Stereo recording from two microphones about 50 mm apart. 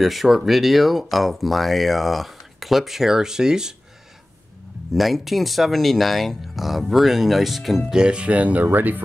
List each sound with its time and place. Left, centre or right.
0.0 s speech: centre
4.9 s speech: centre
7.9 s speech: centre; by 9.0 s right